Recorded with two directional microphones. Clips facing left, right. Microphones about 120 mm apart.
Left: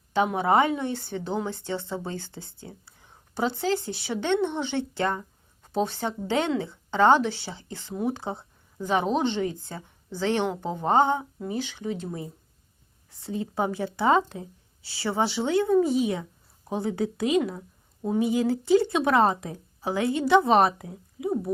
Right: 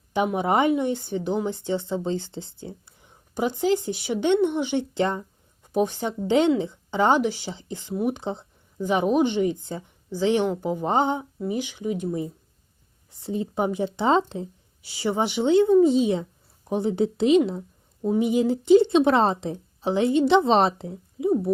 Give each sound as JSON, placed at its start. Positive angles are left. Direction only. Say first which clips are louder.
{"t": 0.3, "sound": "a woman's voice", "louder": "right 2 dB", "side_deg": -20}